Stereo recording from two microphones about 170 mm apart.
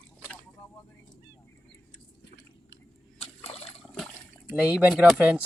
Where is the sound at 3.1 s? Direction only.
35° left (ahead or behind).